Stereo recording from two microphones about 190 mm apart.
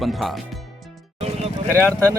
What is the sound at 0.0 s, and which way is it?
Speech, centre (ahead or behind).